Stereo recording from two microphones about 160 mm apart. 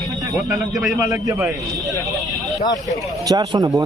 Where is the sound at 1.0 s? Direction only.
20° right (ahead or behind).